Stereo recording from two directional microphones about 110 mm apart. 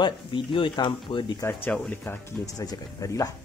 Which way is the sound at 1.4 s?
20° left (ahead or behind).